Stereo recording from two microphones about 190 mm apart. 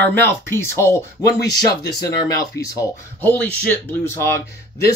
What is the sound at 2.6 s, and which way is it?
Speech, 15° left (ahead or behind).